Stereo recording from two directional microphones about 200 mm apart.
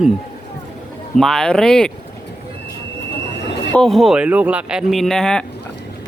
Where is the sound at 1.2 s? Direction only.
Centre (ahead or behind).